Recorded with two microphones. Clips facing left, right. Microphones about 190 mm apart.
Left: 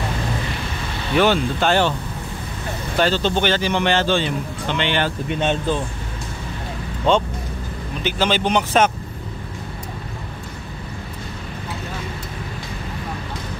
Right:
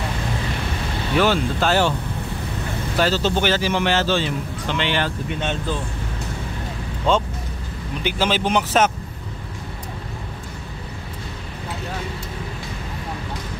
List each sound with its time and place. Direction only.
1.1 s speech: centre (ahead or behind)
3.0 s speech: 5° right (ahead or behind)
5.4 s speech: 20° left (ahead or behind)
8.0 s speech: 10° right (ahead or behind)